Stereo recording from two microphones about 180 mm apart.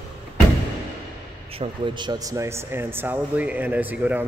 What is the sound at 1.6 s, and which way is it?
Speech, 25° right (ahead or behind).